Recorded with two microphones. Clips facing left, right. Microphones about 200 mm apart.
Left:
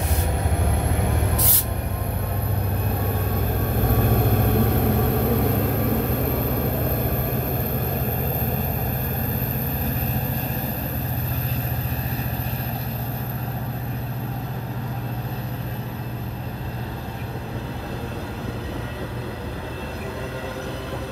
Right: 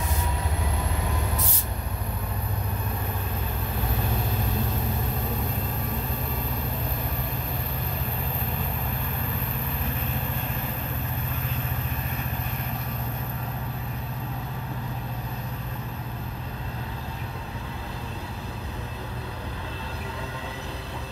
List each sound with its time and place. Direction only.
3.8 s vehicle: 55° left (ahead or behind)